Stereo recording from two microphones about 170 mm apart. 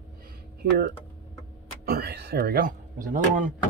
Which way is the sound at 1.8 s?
70° right (ahead or behind).